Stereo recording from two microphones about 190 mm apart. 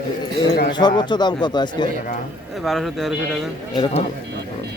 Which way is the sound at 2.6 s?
Centre (ahead or behind).